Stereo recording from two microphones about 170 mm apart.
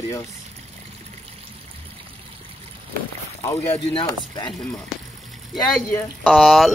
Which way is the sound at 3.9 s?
25° left (ahead or behind).